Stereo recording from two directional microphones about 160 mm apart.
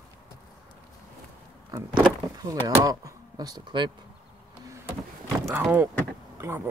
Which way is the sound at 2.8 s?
20° right (ahead or behind).